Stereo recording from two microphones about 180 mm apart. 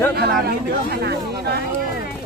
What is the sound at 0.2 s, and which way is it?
Speech, 65° right (ahead or behind).